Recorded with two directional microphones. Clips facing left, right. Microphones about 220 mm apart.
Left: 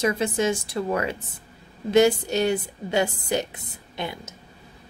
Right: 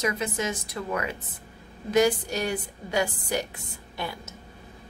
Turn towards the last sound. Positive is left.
turn(degrees=20)  # may be behind; listen again after turning